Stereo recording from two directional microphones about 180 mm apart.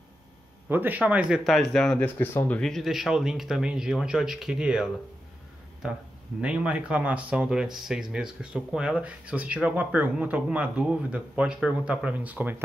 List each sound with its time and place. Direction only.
0.7 s speech: 10° right (ahead or behind)